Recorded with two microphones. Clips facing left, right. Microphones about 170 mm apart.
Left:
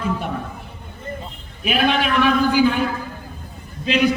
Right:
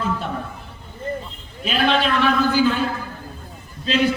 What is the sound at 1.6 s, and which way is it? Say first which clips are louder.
A man's voice: even; 15° left (ahead or behind).